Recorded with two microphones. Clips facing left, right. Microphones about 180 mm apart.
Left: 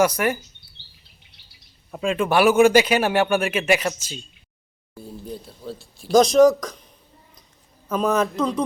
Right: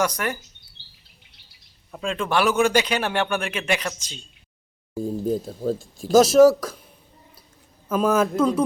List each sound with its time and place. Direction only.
0.0 s a man's voice: 10° left (ahead or behind)
1.9 s a man's voice: 5° left (ahead or behind)
4.9 s speech: 45° right (ahead or behind)
6.1 s a woman's voice: 5° right (ahead or behind)
7.9 s a man's voice: 5° right (ahead or behind)